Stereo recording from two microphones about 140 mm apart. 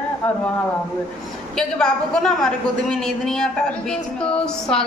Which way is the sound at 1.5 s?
5° left (ahead or behind).